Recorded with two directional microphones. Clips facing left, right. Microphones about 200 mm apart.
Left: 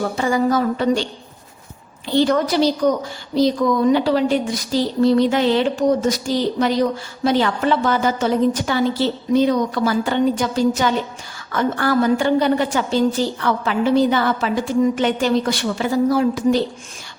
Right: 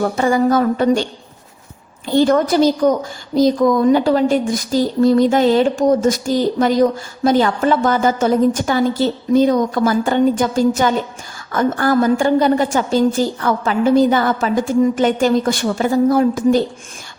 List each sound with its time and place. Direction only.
0.0 s a woman's voice: 50° right (ahead or behind)
2.0 s a woman's voice: 45° right (ahead or behind)